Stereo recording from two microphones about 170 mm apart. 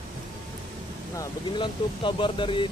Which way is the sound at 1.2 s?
30° left (ahead or behind).